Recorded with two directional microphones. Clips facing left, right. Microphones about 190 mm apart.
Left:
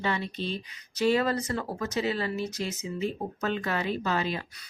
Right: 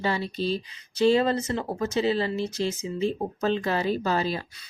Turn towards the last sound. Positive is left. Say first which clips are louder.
# right 3 dB
turn(degrees=-35)  # may be behind; listen again after turning